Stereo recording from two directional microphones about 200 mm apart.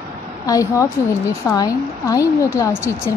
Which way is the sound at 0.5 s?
15° left (ahead or behind).